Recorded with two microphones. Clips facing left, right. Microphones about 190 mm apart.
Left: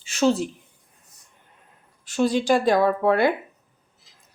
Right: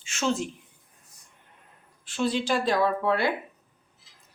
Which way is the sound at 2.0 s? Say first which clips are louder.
Left 5 dB; 40° left (ahead or behind).